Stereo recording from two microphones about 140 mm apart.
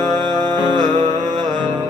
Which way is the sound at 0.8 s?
60° right (ahead or behind).